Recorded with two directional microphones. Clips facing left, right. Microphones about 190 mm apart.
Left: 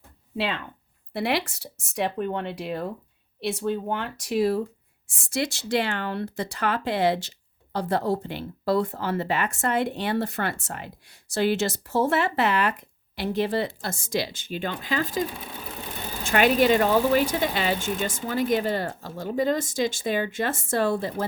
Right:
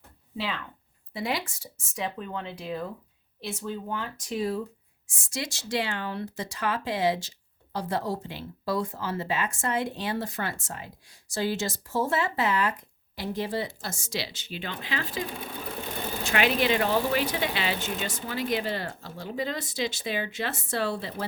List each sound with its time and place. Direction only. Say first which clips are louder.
0.3 s speech: left 5 dB; 65° left (ahead or behind); by 21.2 s 45° left (ahead or behind)